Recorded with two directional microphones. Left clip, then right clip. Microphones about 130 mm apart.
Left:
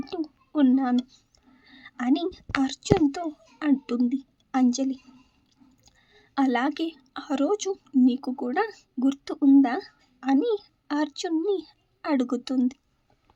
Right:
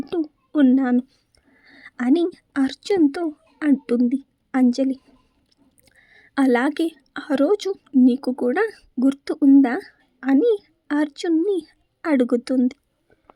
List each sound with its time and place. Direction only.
0.0 s a woman's voice: 25° right (ahead or behind)
1.6 s a woman's voice: 35° right (ahead or behind)
6.0 s a woman's voice: 30° right (ahead or behind)